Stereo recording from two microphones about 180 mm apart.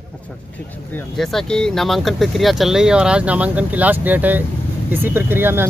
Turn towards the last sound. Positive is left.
turn(degrees=-10)  # may be behind; listen again after turning